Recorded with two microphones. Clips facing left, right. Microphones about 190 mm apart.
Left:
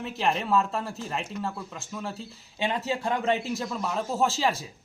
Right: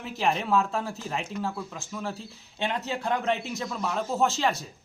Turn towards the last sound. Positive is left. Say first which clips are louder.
# even
turn(degrees=5)  # may be behind; listen again after turning